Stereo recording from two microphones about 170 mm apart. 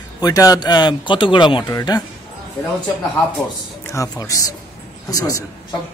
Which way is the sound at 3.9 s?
20° left (ahead or behind).